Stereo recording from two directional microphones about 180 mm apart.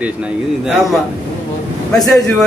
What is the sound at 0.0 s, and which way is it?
Speech, 5° right (ahead or behind).